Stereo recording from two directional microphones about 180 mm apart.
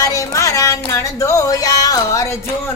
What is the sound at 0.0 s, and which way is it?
Music, 20° left (ahead or behind).